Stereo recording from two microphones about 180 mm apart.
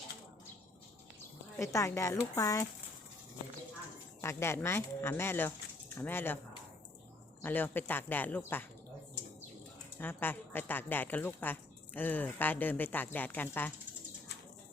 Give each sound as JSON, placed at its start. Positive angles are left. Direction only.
{"t": 1.5, "sound": "speech", "side_deg": 15}
{"t": 4.2, "sound": "speech", "side_deg": 15}
{"t": 7.4, "sound": "speech", "side_deg": 10}
{"t": 10.0, "sound": "speech", "side_deg": 10}